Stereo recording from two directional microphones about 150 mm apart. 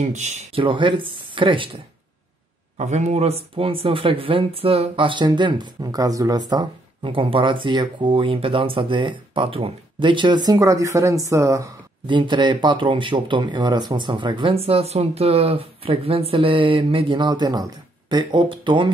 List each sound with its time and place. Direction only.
0.0 s speech: 50° right (ahead or behind)
0.6 s speech: 35° right (ahead or behind)
2.8 s speech: 50° right (ahead or behind); by 18.9 s 30° right (ahead or behind)